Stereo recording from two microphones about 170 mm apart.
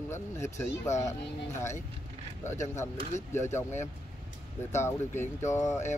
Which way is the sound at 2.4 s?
15° left (ahead or behind).